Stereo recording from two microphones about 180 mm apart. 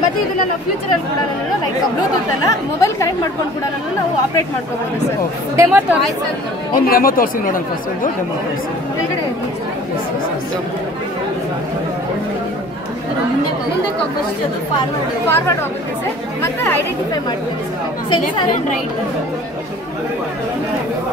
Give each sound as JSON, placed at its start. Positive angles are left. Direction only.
{"t": 2.4, "sound": "speech", "side_deg": 15}
{"t": 5.6, "sound": "speech", "side_deg": -10}
{"t": 6.7, "sound": "speech", "side_deg": 55}
{"t": 15.2, "sound": "speech", "side_deg": 10}
{"t": 16.6, "sound": "speech", "side_deg": 15}